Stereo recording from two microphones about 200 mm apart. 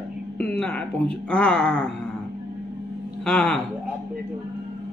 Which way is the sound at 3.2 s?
5° left (ahead or behind).